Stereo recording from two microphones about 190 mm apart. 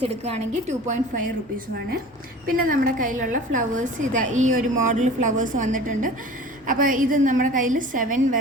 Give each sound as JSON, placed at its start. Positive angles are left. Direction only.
{"t": 0.7, "sound": "a woman's voice", "side_deg": -40}
{"t": 2.5, "sound": "a woman's voice", "side_deg": -45}